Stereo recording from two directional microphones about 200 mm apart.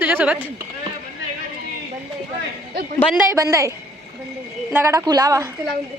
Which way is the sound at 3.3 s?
15° right (ahead or behind).